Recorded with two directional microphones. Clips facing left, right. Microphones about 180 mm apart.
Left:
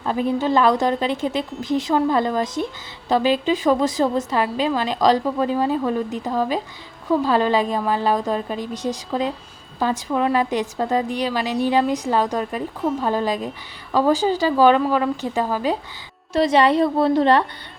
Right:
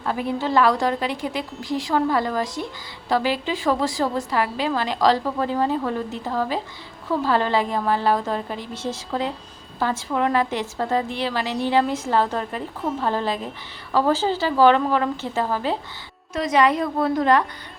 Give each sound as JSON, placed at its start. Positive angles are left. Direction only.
{"t": 0.0, "sound": "a woman's voice", "side_deg": 20}
{"t": 16.3, "sound": "a woman's voice", "side_deg": 30}